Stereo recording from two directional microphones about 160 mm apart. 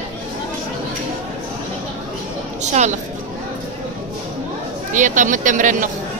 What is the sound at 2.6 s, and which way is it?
Speech, 45° right (ahead or behind).